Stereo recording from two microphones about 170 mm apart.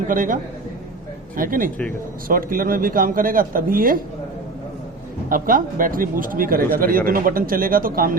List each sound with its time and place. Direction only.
0.1 s speech: 55° right (ahead or behind)
1.4 s speech: 55° right (ahead or behind)
5.3 s speech: 55° right (ahead or behind)